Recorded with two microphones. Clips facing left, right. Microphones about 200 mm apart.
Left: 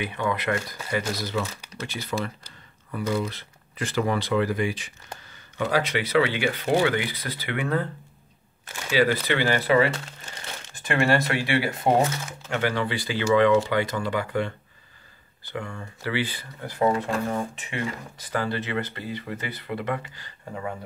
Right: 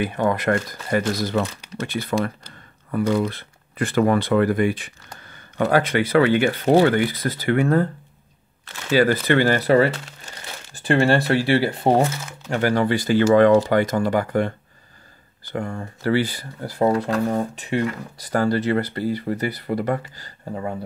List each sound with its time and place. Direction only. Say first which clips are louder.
0.0 s speech: right 6 dB; 45° right (ahead or behind)
8.9 s speech: right 5 dB; 50° right (ahead or behind); by 11.9 s 35° right (ahead or behind)
12.0 s speech: right 3 dB; 10° right (ahead or behind)
12.4 s speech: right 6 dB; 40° right (ahead or behind)
15.5 s speech: right 6 dB; 50° right (ahead or behind)